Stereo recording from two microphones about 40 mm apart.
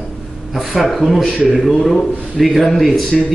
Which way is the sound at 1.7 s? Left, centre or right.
Centre.